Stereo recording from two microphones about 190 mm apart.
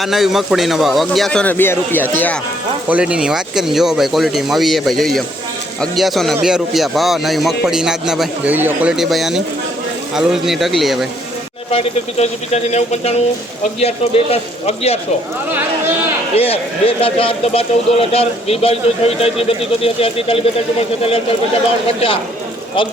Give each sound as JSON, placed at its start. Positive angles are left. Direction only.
{"t": 0.0, "sound": "speech", "side_deg": 0}
{"t": 2.9, "sound": "speech", "side_deg": -5}
{"t": 11.7, "sound": "speech", "side_deg": 35}
{"t": 16.3, "sound": "speech", "side_deg": 30}